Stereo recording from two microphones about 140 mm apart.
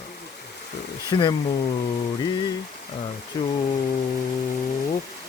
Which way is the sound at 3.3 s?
35° left (ahead or behind).